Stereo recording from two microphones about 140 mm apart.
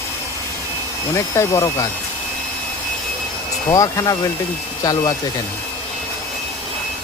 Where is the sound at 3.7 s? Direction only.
25° left (ahead or behind).